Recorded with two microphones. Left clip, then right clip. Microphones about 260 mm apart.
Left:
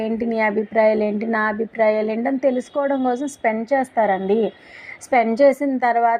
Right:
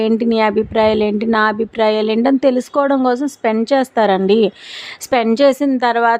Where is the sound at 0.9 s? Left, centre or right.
Right.